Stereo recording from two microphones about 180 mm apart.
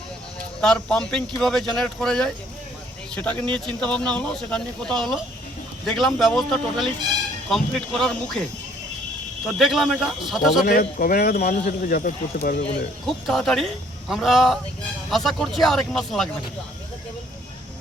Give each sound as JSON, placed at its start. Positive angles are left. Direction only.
{"t": 0.6, "sound": "speech", "side_deg": 5}
{"t": 3.5, "sound": "speech", "side_deg": 5}
{"t": 9.5, "sound": "speech", "side_deg": 0}
{"t": 10.6, "sound": "speech", "side_deg": 50}
{"t": 11.5, "sound": "speech", "side_deg": 50}
{"t": 13.1, "sound": "speech", "side_deg": 0}